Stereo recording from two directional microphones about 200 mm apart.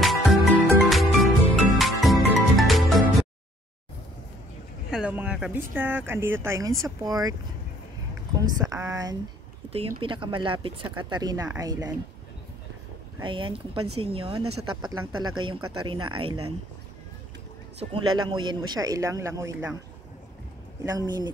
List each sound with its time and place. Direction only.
0.0 s music: centre (ahead or behind)
4.9 s speech: 5° right (ahead or behind)
8.4 s speech: 15° right (ahead or behind)
9.7 s speech: 25° right (ahead or behind)
13.2 s speech: 25° right (ahead or behind)
17.7 s speech: 25° right (ahead or behind)
20.8 s speech: 20° right (ahead or behind)